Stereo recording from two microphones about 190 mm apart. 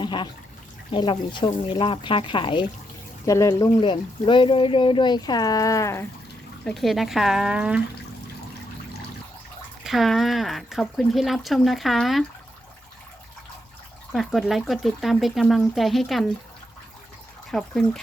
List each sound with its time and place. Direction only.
0.0 s a sound: 25° left (ahead or behind)
0.9 s speech: 25° left (ahead or behind)
6.7 s speech: centre (ahead or behind)
9.8 s speech: centre (ahead or behind)
14.1 s speech: centre (ahead or behind)
17.5 s speech: 5° left (ahead or behind)